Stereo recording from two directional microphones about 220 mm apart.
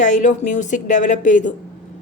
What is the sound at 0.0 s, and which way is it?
Speech, 35° left (ahead or behind).